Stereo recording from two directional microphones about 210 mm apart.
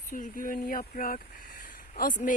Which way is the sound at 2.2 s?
40° left (ahead or behind).